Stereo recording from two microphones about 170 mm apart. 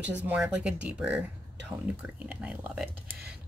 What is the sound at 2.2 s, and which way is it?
Speech, 5° right (ahead or behind).